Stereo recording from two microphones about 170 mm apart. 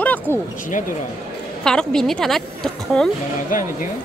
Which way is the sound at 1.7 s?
5° left (ahead or behind).